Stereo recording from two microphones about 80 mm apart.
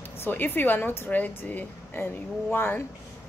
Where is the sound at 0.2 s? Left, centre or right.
Left.